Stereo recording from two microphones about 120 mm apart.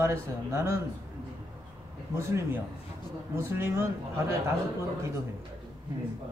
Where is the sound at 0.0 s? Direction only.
25° right (ahead or behind).